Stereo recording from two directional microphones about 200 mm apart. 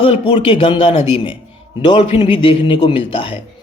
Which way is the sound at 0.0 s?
25° left (ahead or behind).